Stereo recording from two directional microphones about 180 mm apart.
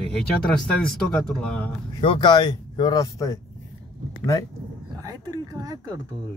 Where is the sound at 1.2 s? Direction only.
5° left (ahead or behind).